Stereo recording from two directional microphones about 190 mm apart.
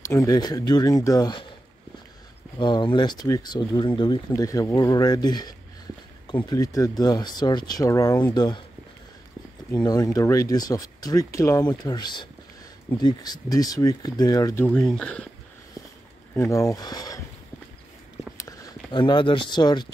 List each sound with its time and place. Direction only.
0.0 s speech: 15° left (ahead or behind)
2.6 s speech: 25° left (ahead or behind)
6.5 s speech: 15° left (ahead or behind)
9.7 s speech: 20° left (ahead or behind)
14.7 s speech: centre (ahead or behind)
16.3 s speech: 15° left (ahead or behind)
18.4 s speech: 20° left (ahead or behind)